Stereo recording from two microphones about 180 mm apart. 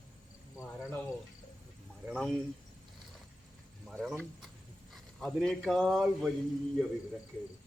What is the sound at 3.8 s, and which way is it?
Speech, centre (ahead or behind).